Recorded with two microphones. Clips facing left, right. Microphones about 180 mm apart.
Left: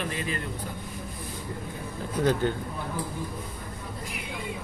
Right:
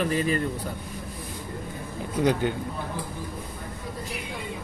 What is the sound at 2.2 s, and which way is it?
Speech, 15° right (ahead or behind).